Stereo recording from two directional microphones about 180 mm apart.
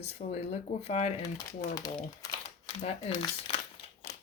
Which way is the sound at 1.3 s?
20° left (ahead or behind).